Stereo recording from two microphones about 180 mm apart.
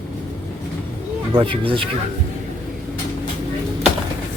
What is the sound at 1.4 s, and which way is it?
Speech, 30° right (ahead or behind).